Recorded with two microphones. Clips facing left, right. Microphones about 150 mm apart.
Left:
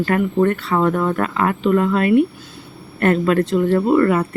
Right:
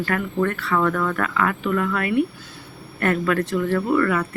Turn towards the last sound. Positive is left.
turn(degrees=30)  # may be behind; listen again after turning